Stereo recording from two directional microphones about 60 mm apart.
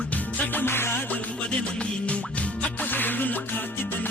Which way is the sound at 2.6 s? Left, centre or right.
Left.